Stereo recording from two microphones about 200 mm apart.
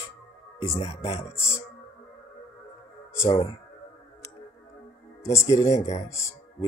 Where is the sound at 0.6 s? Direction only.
30° left (ahead or behind).